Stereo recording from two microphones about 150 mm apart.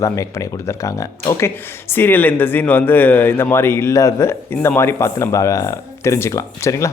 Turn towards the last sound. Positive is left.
turn(degrees=20)  # may be behind; listen again after turning